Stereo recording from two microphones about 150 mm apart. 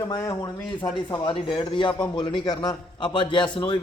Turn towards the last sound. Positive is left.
turn(degrees=35)  # may be behind; listen again after turning